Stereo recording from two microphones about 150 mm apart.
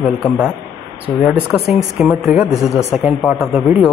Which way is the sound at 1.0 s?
10° right (ahead or behind).